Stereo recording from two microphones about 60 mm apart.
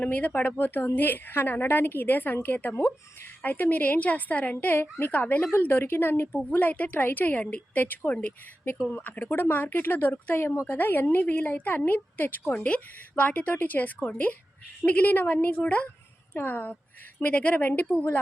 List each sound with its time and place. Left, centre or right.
0.0 s a woman's voice: left
10.7 s a woman's voice: left
12.5 s a woman's voice: left